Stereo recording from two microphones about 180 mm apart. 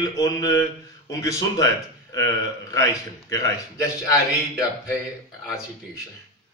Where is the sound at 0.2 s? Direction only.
20° left (ahead or behind).